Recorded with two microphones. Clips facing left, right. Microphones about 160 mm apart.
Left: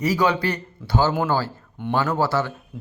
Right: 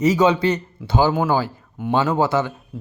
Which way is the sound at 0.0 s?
20° right (ahead or behind).